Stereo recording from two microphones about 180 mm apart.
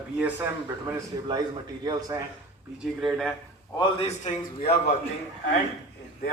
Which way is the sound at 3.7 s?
25° left (ahead or behind).